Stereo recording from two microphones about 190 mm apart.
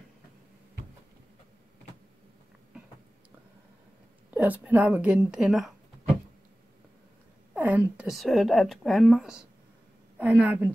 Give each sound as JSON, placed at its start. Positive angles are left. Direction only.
{"t": 4.3, "sound": "a sound", "side_deg": -10}
{"t": 4.6, "sound": "speech", "side_deg": -10}
{"t": 7.5, "sound": "a woman's voice", "side_deg": -5}